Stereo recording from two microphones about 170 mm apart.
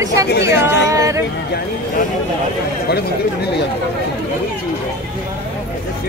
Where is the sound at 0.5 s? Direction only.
90° left.